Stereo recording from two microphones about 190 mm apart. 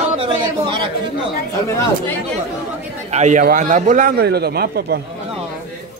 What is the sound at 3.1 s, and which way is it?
A man's voice, 40° right (ahead or behind).